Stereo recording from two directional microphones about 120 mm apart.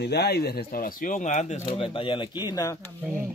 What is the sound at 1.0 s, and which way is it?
Speech, 90° left.